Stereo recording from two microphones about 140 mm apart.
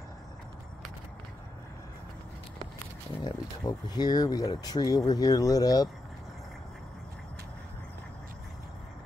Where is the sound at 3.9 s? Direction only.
30° left (ahead or behind).